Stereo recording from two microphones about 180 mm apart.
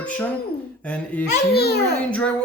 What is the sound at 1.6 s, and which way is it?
Speech, 60° left (ahead or behind).